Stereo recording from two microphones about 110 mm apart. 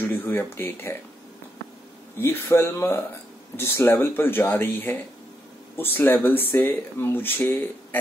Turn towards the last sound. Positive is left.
turn(degrees=20)  # may be behind; listen again after turning